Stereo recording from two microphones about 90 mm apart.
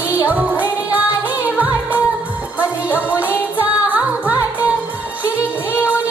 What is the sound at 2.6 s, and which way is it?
Music, 15° right (ahead or behind).